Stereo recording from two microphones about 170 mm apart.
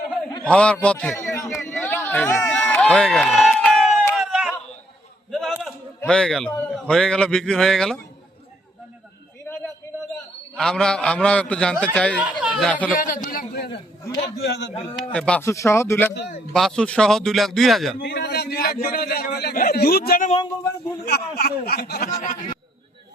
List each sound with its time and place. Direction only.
0.4 s a man's voice: 5° left (ahead or behind)
1.7 s a sound: 10° left (ahead or behind)
6.6 s a man's voice: 5° left (ahead or behind)
10.5 s a man's voice: 5° left (ahead or behind)
12.2 s speech: 5° right (ahead or behind)
13.0 s a sound: 55° left (ahead or behind)
14.3 s a man's voice: 75° left (ahead or behind)
15.1 s speech: 5° left (ahead or behind)
16.5 s a man's voice: 5° left (ahead or behind)
18.0 s a man's voice: 70° left (ahead or behind)